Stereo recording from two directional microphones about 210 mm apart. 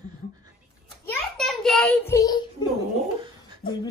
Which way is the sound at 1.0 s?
Centre (ahead or behind).